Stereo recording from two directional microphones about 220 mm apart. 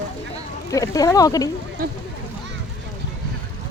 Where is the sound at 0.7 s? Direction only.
15° left (ahead or behind).